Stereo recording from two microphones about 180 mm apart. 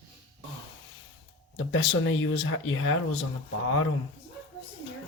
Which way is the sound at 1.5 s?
90° left.